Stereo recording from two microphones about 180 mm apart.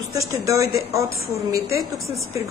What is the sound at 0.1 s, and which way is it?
Speech, 15° right (ahead or behind).